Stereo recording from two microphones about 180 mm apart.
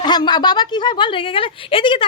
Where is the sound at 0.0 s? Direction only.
25° left (ahead or behind).